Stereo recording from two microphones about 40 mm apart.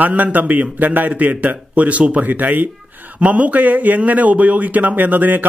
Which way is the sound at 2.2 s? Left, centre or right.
Right.